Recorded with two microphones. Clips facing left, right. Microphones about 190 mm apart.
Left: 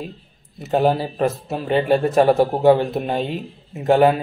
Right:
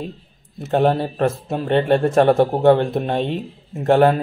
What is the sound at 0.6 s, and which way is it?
A man's voice, centre (ahead or behind).